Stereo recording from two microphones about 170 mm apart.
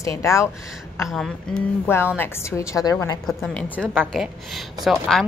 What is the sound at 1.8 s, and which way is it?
A woman's voice, 15° left (ahead or behind).